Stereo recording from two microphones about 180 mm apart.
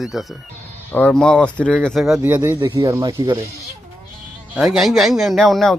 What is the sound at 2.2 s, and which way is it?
Speech, 15° right (ahead or behind).